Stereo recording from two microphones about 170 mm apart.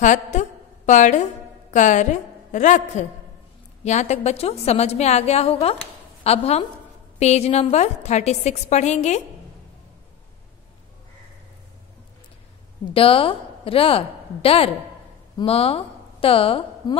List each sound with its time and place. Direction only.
0.0 s a woman's voice: 45° left (ahead or behind)
12.9 s a woman's voice: 35° left (ahead or behind)